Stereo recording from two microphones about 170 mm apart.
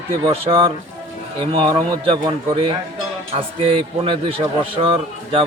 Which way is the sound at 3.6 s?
30° right (ahead or behind).